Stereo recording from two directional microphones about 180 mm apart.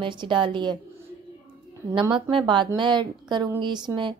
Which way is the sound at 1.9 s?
25° right (ahead or behind).